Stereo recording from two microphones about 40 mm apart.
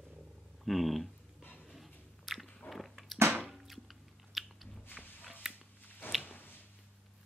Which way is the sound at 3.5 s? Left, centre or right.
Centre.